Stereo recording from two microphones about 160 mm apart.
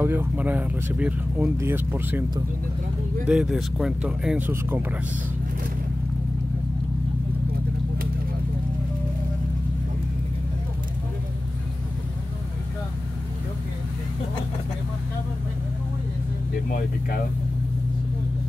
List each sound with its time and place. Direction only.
0.0 s speech: 15° right (ahead or behind)
3.3 s speech: centre (ahead or behind)
16.6 s a sound: 60° left (ahead or behind)